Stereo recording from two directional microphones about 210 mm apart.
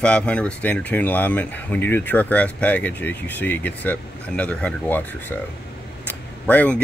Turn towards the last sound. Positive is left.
turn(degrees=10)  # may be behind; listen again after turning